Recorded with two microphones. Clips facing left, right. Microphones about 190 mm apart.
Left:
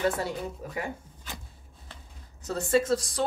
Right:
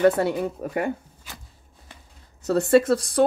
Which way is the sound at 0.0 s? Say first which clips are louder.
Right 9 dB; 60° right (ahead or behind).